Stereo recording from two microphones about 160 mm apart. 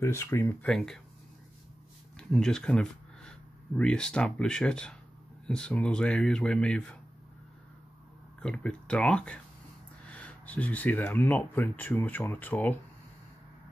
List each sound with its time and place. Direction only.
0.0 s speech: 20° left (ahead or behind)
0.7 s speech: 5° left (ahead or behind)
2.1 s speech: 5° left (ahead or behind)
8.4 s speech: 5° left (ahead or behind)